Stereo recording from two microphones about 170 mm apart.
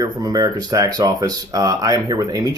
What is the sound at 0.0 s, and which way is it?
Speech, 25° right (ahead or behind).